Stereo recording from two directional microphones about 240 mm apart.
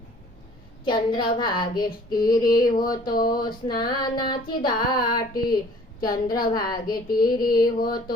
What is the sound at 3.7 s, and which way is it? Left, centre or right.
Speech, centre.